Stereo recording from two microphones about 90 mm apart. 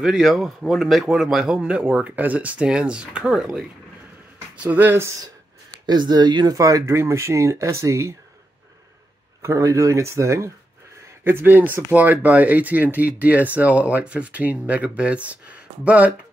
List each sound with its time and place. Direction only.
0.0 s a man's voice: 5° right (ahead or behind)
4.6 s speech: 20° right (ahead or behind)
5.9 s speech: 55° right (ahead or behind)
6.6 s speech: 35° right (ahead or behind)
9.4 s speech: 35° right (ahead or behind); by 16.2 s 15° right (ahead or behind)